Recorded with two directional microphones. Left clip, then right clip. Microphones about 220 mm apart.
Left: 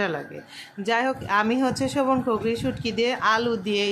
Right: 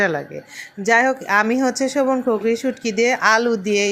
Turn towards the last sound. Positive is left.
turn(degrees=-20)  # may be behind; listen again after turning